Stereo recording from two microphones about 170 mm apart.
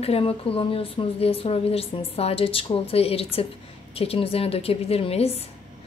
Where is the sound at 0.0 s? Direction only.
35° left (ahead or behind).